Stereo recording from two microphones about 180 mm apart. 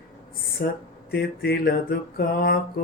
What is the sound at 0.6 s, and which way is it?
Mantra, 60° left (ahead or behind).